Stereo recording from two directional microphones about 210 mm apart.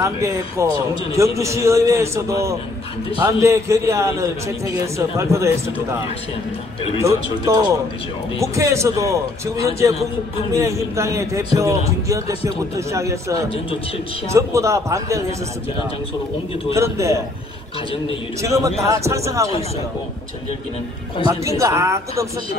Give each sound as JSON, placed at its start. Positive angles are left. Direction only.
{"t": 0.0, "sound": "a man's voice", "side_deg": -15}
{"t": 7.0, "sound": "a man's voice", "side_deg": -15}
{"t": 16.7, "sound": "a man's voice", "side_deg": -15}
{"t": 18.4, "sound": "a man's voice", "side_deg": -15}
{"t": 21.2, "sound": "a man's voice", "side_deg": -15}